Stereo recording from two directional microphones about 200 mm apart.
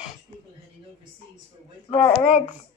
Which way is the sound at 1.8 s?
25° left (ahead or behind).